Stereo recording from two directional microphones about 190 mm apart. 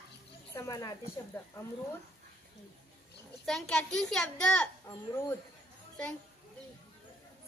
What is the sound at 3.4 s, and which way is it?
A child's voice, centre (ahead or behind).